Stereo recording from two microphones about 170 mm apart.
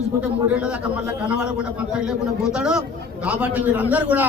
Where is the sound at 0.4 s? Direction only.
5° right (ahead or behind).